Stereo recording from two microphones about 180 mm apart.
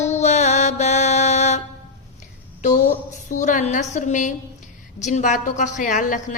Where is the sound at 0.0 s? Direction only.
40° left (ahead or behind).